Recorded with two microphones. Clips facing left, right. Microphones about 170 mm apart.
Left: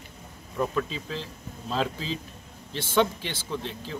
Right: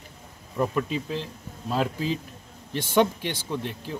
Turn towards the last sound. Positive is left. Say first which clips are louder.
# right 2 dB
turn(degrees=-15)  # may be behind; listen again after turning